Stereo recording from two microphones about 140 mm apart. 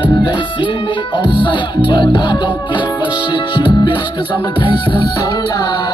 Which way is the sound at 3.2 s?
35° left (ahead or behind).